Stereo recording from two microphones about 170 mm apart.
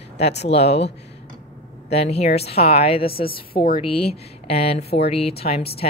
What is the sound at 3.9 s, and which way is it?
A woman's voice, 35° left (ahead or behind).